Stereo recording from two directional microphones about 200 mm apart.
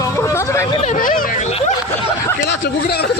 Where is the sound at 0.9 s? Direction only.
40° left (ahead or behind).